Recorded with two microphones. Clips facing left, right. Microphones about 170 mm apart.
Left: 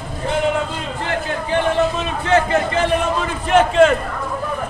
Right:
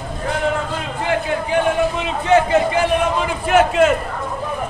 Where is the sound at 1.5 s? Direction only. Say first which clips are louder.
Left 1 dB; 15° right (ahead or behind).